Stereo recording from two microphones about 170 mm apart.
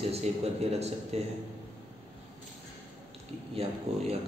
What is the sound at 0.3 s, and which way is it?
Speech, 40° right (ahead or behind).